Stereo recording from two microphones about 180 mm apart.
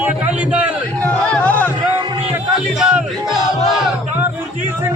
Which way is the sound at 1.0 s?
10° left (ahead or behind).